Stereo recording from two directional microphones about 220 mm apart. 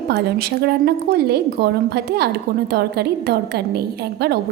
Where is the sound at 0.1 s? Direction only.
45° right (ahead or behind).